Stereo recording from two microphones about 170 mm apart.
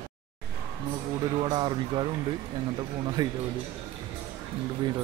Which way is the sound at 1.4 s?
25° right (ahead or behind).